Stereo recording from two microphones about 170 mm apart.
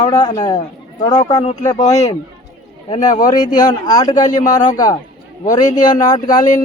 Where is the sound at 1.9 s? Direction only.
40° left (ahead or behind).